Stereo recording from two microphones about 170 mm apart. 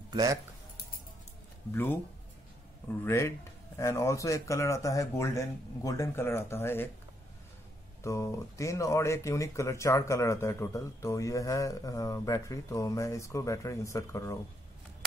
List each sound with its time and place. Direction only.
0.1 s speech: 25° right (ahead or behind)
1.7 s speech: 10° left (ahead or behind)
3.0 s speech: 15° left (ahead or behind)
8.0 s speech: 20° left (ahead or behind)